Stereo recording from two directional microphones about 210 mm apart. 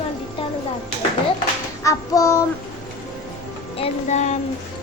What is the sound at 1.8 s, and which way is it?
Speech, 15° left (ahead or behind).